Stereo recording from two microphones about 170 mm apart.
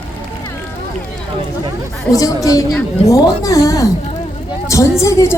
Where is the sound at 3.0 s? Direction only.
20° left (ahead or behind).